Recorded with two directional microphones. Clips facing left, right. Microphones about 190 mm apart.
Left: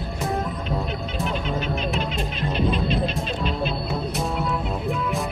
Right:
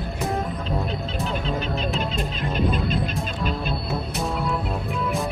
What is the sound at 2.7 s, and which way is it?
Music, 45° right (ahead or behind).